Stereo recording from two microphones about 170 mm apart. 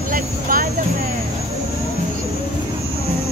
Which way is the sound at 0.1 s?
55° right (ahead or behind).